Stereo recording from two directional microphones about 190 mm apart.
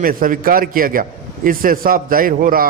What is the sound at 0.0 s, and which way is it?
A man's voice, 45° right (ahead or behind).